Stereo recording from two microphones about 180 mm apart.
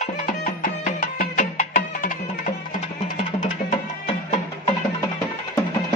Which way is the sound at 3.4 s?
40° left (ahead or behind).